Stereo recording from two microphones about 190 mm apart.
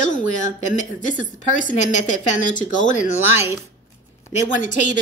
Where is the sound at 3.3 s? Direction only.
10° right (ahead or behind).